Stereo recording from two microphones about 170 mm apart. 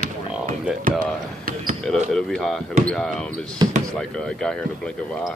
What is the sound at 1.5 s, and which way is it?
Speech, 55° right (ahead or behind).